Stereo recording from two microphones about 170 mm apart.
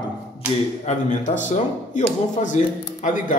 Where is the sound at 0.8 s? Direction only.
45° left (ahead or behind).